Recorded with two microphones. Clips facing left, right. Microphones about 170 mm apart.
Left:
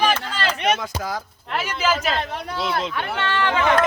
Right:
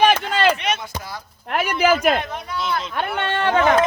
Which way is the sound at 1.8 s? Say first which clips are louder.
Right 5 dB; 60° right (ahead or behind).